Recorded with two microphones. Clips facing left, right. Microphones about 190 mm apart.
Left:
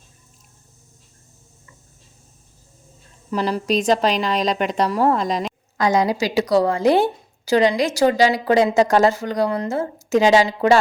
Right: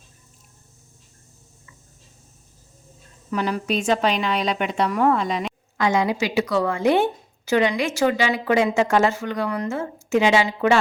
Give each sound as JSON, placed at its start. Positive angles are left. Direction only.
{"t": 3.3, "sound": "a woman's voice", "side_deg": 35}